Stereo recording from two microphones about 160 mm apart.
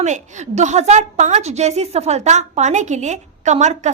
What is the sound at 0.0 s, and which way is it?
A woman's voice, 45° right (ahead or behind).